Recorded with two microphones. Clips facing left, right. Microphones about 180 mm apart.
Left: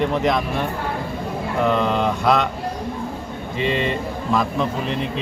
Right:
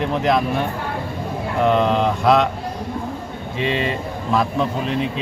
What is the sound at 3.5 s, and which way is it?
A man's voice, centre (ahead or behind).